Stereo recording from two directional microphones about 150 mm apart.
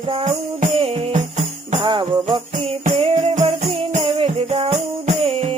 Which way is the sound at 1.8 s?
35° right (ahead or behind).